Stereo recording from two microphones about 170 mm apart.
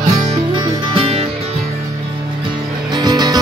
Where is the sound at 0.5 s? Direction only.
30° right (ahead or behind).